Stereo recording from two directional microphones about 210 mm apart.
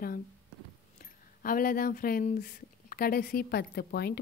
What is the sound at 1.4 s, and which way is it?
Speech, 45° left (ahead or behind).